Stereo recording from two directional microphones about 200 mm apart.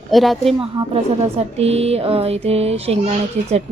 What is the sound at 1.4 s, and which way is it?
Speech, 30° right (ahead or behind).